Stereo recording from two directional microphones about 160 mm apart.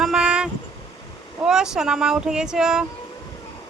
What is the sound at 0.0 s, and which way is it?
Vehicle, 5° right (ahead or behind).